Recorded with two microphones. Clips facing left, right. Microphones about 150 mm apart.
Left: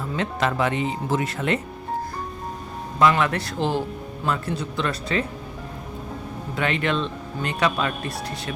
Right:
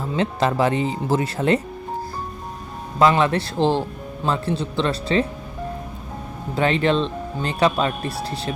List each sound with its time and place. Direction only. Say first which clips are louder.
0.2 s speech: right 4 dB; 30° right (ahead or behind)
3.0 s speech: right 3 dB; 30° right (ahead or behind)
6.6 s speech: right 5 dB; 30° right (ahead or behind)